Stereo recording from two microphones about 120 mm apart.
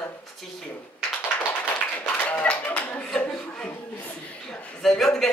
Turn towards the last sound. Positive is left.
turn(degrees=5)  # may be behind; listen again after turning